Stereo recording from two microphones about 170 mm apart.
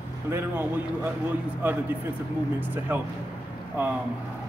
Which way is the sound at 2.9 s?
10° right (ahead or behind).